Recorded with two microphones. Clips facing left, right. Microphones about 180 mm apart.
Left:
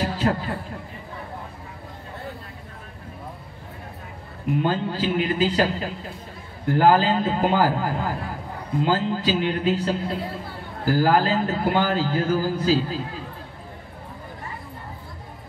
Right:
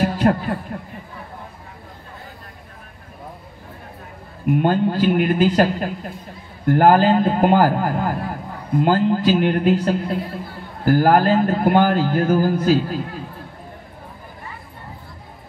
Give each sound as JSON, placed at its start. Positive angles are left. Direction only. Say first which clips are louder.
{"t": 0.0, "sound": "a man's voice", "louder": "right 6 dB", "side_deg": -55}
{"t": 4.5, "sound": "a man's voice", "louder": "right 6 dB", "side_deg": -55}